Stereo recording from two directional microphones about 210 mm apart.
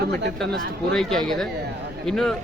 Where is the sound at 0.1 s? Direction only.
50° right (ahead or behind).